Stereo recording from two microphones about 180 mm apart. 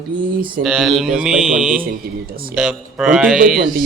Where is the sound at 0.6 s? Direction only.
Centre (ahead or behind).